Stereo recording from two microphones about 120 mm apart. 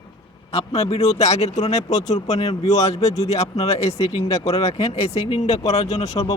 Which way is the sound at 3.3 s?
65° left (ahead or behind).